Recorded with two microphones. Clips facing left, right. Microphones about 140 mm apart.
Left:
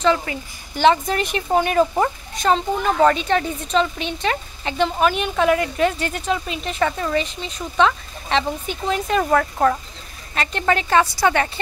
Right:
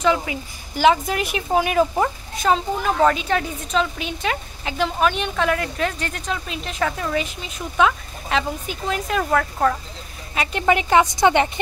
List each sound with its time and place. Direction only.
0.0 s speech: 10° right (ahead or behind)
10.3 s a woman's voice: 10° right (ahead or behind)